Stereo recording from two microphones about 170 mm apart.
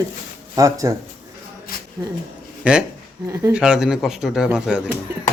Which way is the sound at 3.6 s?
5° right (ahead or behind).